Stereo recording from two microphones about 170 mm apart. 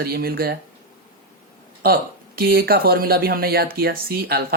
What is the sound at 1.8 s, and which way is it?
Speech, 60° right (ahead or behind).